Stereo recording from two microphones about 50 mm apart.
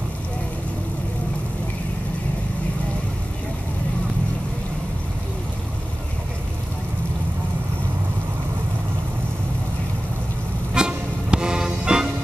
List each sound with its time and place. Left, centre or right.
10.7 s music: centre